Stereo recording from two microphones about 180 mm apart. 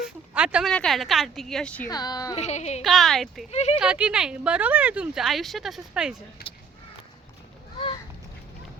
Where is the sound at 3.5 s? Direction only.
35° left (ahead or behind).